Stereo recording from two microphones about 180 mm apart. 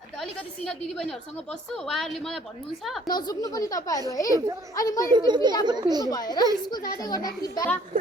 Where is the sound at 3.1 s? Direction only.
20° left (ahead or behind).